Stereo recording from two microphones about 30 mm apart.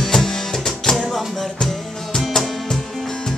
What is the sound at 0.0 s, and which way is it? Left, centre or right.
Music, centre.